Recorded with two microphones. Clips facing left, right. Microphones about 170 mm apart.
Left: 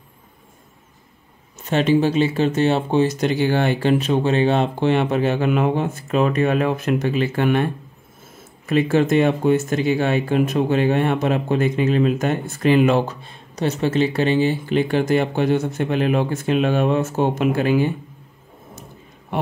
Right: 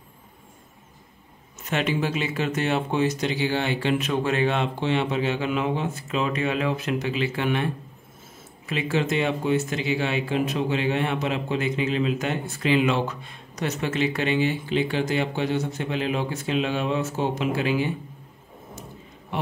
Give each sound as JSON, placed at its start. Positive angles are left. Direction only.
{"t": 1.6, "sound": "speech", "side_deg": 30}
{"t": 3.2, "sound": "speech", "side_deg": 50}
{"t": 4.0, "sound": "speech", "side_deg": 30}
{"t": 4.7, "sound": "speech", "side_deg": 50}
{"t": 8.6, "sound": "speech", "side_deg": 50}
{"t": 13.0, "sound": "speech", "side_deg": 30}
{"t": 14.7, "sound": "speech", "side_deg": 50}